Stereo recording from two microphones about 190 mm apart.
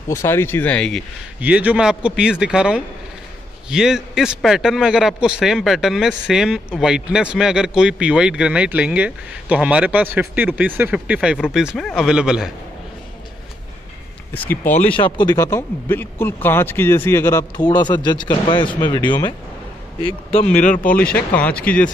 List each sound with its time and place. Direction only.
0.1 s speech: 15° left (ahead or behind)
1.4 s speech: 10° right (ahead or behind)
15.0 s speech: 25° left (ahead or behind)
20.5 s speech: 40° left (ahead or behind)
20.9 s speech: 5° left (ahead or behind)